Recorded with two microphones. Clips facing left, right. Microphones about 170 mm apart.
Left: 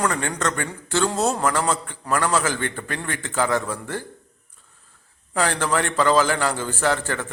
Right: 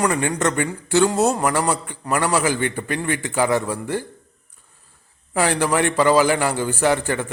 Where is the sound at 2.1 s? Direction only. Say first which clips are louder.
Right 2 dB; 15° right (ahead or behind).